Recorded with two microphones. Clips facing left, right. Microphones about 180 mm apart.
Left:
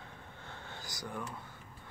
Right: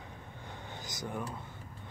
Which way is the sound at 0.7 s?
20° right (ahead or behind).